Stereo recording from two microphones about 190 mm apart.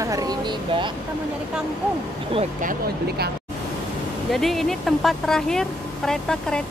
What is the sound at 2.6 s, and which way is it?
Speech, 45° right (ahead or behind).